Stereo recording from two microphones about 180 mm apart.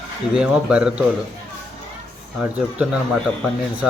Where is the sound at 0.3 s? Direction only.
5° right (ahead or behind).